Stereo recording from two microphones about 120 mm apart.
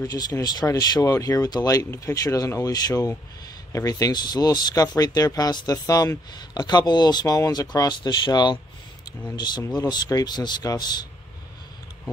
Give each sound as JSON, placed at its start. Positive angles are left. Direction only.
{"t": 0.0, "sound": "speech", "side_deg": 30}